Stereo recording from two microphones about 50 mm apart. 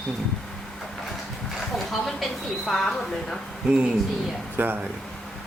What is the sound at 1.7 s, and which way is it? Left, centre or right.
Speech, centre.